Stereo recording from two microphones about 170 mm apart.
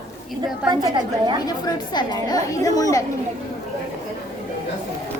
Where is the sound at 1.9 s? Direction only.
25° left (ahead or behind).